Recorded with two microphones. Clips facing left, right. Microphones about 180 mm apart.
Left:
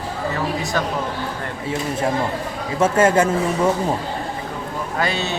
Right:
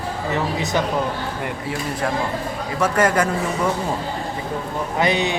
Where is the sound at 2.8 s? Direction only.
25° left (ahead or behind).